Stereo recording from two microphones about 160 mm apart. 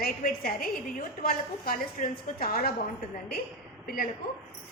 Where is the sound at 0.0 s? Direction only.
60° left (ahead or behind).